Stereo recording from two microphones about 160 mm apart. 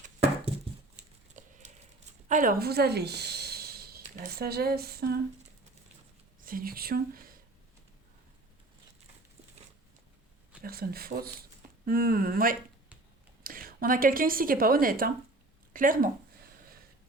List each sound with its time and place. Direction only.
1.4 s a sound: 50° right (ahead or behind)
2.2 s speech: 55° right (ahead or behind); by 5.2 s 75° right (ahead or behind)
6.4 s speech: 65° right (ahead or behind)
10.6 s a woman's voice: 70° right (ahead or behind)